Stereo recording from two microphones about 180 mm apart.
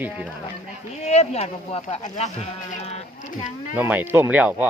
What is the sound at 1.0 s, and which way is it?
Speech, 35° left (ahead or behind).